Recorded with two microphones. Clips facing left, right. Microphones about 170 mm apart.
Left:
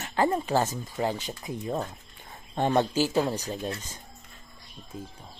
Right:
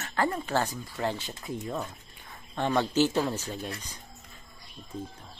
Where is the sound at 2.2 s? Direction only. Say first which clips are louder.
Left 3 dB; 20° left (ahead or behind).